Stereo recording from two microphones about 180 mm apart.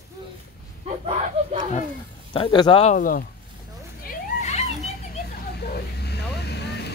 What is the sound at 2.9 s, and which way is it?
Speech, 50° left (ahead or behind).